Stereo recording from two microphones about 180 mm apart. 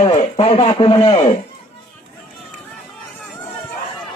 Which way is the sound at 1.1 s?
35° left (ahead or behind).